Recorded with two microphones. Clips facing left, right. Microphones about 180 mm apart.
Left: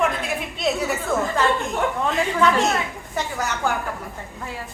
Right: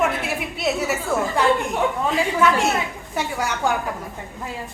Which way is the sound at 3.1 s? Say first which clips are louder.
Right 1 dB; 10° right (ahead or behind).